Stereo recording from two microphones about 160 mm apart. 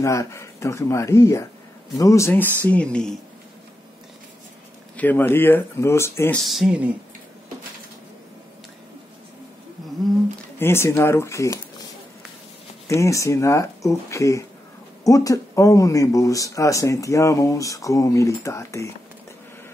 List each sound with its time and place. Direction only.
0.0 s speech: 20° left (ahead or behind)
4.9 s speech: 10° left (ahead or behind)
6.4 s speech: centre (ahead or behind)
10.6 s speech: 15° left (ahead or behind)
12.8 s speech: 20° left (ahead or behind)